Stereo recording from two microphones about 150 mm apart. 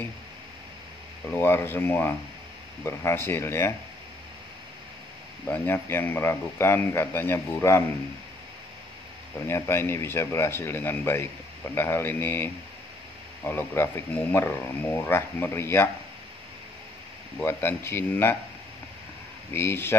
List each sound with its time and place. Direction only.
1.3 s speech: 15° left (ahead or behind)
5.5 s speech: 15° left (ahead or behind)
9.5 s speech: 15° left (ahead or behind)
13.5 s speech: 15° left (ahead or behind)
17.4 s speech: 15° left (ahead or behind)
19.5 s speech: 15° left (ahead or behind)